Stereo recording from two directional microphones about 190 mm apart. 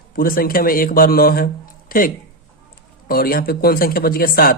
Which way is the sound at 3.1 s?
50° left (ahead or behind).